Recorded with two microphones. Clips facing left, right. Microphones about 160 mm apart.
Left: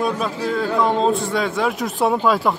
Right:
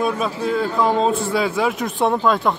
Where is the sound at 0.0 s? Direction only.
Centre (ahead or behind).